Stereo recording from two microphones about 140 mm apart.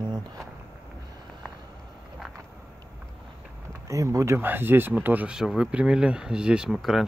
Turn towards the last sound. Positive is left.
turn(degrees=0)  # may be behind; listen again after turning